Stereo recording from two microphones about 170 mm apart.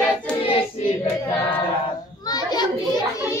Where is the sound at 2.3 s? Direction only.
25° left (ahead or behind).